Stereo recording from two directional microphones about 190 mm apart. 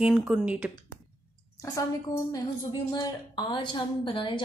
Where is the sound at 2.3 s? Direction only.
20° left (ahead or behind).